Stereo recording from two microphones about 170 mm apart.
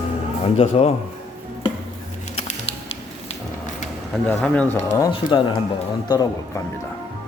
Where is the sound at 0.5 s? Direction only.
35° left (ahead or behind).